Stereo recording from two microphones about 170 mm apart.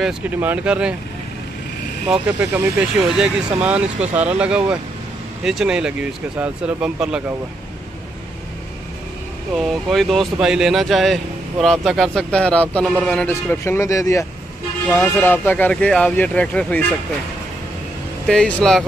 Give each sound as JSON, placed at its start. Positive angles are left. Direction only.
{"t": 0.0, "sound": "speech", "side_deg": -10}
{"t": 2.2, "sound": "speech", "side_deg": -10}
{"t": 9.6, "sound": "speech", "side_deg": 0}
{"t": 13.3, "sound": "speech", "side_deg": 15}
{"t": 18.2, "sound": "speech", "side_deg": 5}